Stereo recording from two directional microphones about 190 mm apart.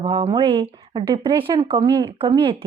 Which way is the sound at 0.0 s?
30° right (ahead or behind).